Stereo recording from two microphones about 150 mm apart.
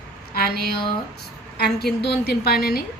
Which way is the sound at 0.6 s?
90° left.